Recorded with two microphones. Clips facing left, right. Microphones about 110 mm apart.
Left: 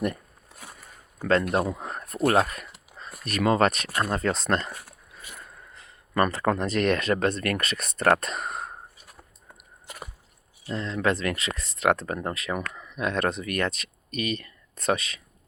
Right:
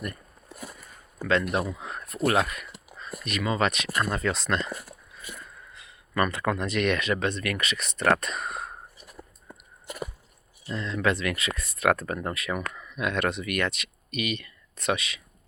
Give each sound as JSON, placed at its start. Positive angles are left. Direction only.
{"t": 1.2, "sound": "speech", "side_deg": 40}
{"t": 5.7, "sound": "speech", "side_deg": 40}
{"t": 10.8, "sound": "speech", "side_deg": 35}